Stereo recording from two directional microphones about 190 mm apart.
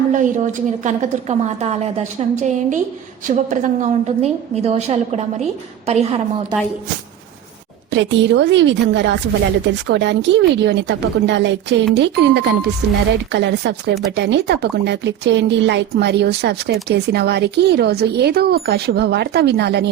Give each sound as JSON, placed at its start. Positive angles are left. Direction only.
{"t": 0.1, "sound": "a woman's voice", "side_deg": -40}
{"t": 7.9, "sound": "a woman's voice", "side_deg": -70}